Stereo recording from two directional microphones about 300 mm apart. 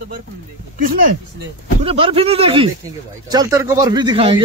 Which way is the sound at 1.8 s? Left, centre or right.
Centre.